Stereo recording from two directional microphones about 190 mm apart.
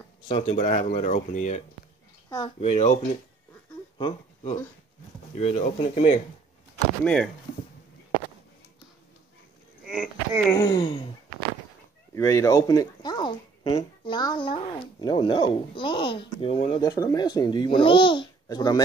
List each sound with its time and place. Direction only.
0.3 s speech: 30° left (ahead or behind)
0.7 s speech: 40° left (ahead or behind)
2.2 s speech: 20° left (ahead or behind)
2.6 s speech: 35° left (ahead or behind)
4.0 s speech: 30° left (ahead or behind)
9.8 s a sound: 5° right (ahead or behind)
10.5 s speech: 20° left (ahead or behind)
12.1 s speech: 15° left (ahead or behind)
16.8 s speech: 20° left (ahead or behind)